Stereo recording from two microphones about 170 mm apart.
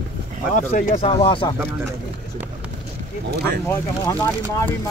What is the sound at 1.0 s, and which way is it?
Speech, 30° left (ahead or behind).